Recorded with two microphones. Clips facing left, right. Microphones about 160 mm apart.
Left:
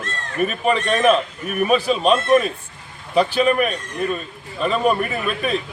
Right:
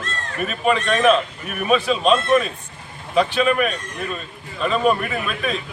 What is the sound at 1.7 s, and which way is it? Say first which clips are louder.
Speech: right 1 dB; 5° left (ahead or behind).